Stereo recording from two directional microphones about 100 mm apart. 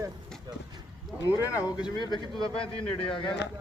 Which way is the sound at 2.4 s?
65° left (ahead or behind).